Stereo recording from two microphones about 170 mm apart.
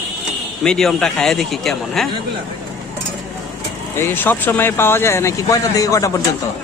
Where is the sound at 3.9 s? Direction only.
15° left (ahead or behind).